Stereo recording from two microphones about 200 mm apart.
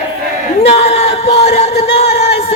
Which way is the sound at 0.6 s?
30° left (ahead or behind).